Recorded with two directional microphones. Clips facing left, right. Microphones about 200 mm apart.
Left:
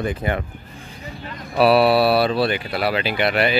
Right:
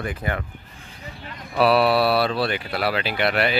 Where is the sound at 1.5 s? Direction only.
5° left (ahead or behind).